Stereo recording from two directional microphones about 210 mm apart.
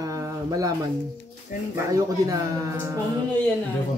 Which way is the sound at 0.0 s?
15° right (ahead or behind).